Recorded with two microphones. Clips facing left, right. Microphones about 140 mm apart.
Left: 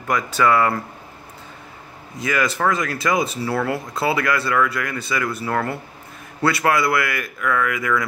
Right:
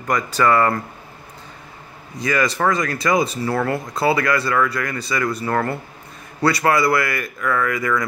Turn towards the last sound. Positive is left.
turn(degrees=5)  # may be behind; listen again after turning